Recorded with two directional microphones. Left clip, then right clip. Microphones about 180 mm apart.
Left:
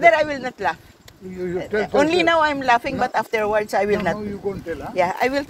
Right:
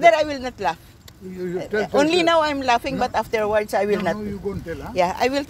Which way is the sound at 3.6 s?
25° right (ahead or behind).